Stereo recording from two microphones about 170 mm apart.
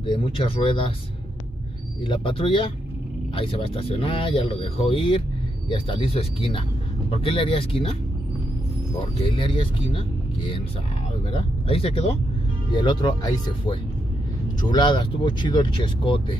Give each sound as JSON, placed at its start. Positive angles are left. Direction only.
{"t": 0.0, "sound": "speech", "side_deg": 30}
{"t": 2.0, "sound": "speech", "side_deg": 30}
{"t": 9.0, "sound": "speech", "side_deg": 30}